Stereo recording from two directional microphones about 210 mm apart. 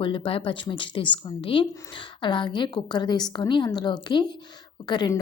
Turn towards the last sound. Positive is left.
turn(degrees=20)  # may be behind; listen again after turning